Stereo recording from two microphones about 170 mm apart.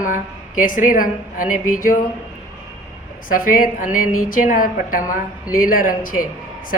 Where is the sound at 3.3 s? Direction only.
55° left (ahead or behind).